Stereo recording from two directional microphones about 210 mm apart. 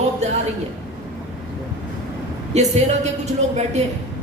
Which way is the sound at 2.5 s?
30° right (ahead or behind).